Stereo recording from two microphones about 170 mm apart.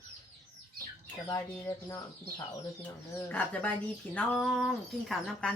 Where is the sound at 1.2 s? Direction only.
20° left (ahead or behind).